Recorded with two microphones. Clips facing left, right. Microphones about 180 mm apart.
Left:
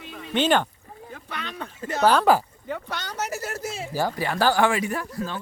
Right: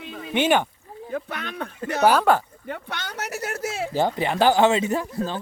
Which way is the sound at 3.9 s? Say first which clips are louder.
Right 3 dB; 20° right (ahead or behind).